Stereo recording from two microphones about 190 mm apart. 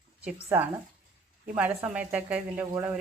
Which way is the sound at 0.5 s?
10° right (ahead or behind).